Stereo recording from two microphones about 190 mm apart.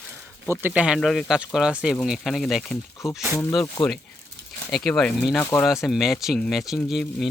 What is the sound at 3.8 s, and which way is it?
Speech, 20° left (ahead or behind).